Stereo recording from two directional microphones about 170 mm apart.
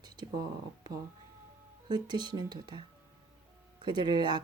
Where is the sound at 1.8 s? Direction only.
25° right (ahead or behind).